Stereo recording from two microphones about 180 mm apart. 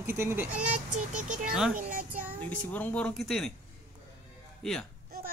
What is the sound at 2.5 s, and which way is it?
Speech, 10° left (ahead or behind).